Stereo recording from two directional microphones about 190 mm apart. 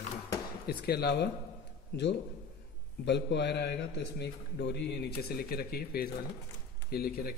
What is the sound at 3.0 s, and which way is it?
A man's voice, 65° left (ahead or behind).